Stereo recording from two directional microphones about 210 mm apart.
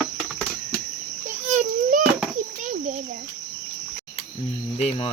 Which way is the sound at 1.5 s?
35° right (ahead or behind).